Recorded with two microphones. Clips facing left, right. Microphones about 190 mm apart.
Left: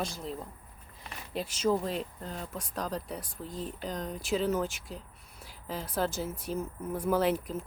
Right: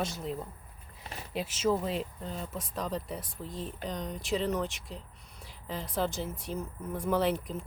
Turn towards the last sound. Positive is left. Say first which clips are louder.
# left 1 dB
turn(degrees=0)  # may be behind; listen again after turning